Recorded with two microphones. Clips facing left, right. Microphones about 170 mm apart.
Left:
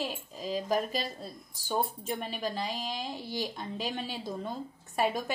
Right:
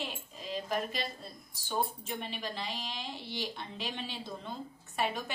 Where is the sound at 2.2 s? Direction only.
45° left (ahead or behind).